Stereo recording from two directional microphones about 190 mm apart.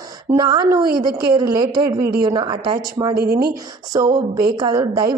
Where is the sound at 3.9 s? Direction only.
20° right (ahead or behind).